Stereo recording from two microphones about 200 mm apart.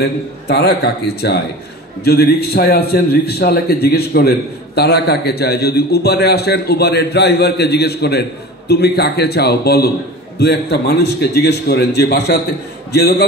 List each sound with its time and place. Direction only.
0.5 s a man's voice: 55° left (ahead or behind)